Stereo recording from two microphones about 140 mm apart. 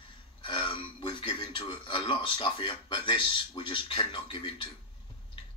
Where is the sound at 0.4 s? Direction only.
35° left (ahead or behind).